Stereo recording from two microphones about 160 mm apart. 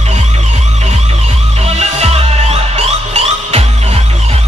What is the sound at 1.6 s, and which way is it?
Music, 40° right (ahead or behind).